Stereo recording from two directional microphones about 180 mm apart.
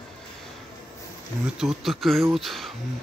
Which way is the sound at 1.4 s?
5° right (ahead or behind).